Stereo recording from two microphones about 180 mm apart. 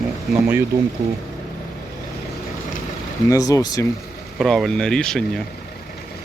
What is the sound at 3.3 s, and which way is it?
Speech, 20° left (ahead or behind).